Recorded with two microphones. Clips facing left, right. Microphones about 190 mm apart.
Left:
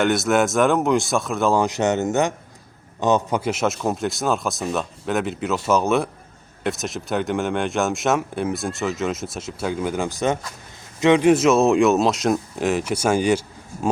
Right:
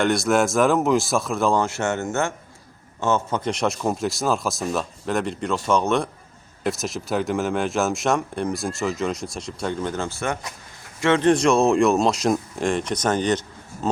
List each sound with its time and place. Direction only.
0.0 s speech: centre (ahead or behind)
1.5 s speech: 15° left (ahead or behind)